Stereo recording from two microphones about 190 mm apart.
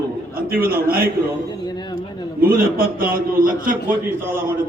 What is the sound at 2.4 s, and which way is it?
A man's voice, 50° right (ahead or behind).